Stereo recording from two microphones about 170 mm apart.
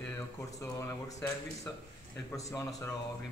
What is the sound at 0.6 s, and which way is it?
Speech, 20° left (ahead or behind).